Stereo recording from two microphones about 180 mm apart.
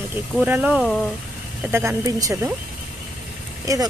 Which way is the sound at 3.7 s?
20° right (ahead or behind).